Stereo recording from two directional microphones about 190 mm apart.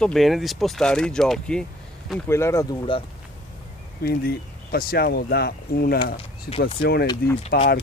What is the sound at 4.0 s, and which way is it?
Speech, 55° left (ahead or behind).